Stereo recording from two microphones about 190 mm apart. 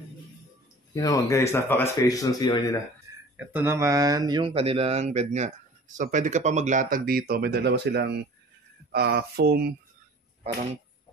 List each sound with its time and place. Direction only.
0.9 s speech: 15° left (ahead or behind)
3.3 s speech: 10° right (ahead or behind); by 9.8 s 55° right (ahead or behind)